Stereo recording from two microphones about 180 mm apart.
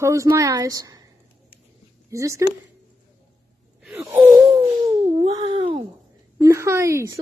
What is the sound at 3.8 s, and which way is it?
Wheeze, 10° right (ahead or behind).